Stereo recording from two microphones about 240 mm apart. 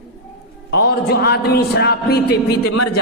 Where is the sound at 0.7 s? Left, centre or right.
Left.